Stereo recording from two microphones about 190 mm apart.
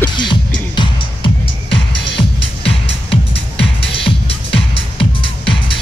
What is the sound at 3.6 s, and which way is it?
Music, 30° left (ahead or behind).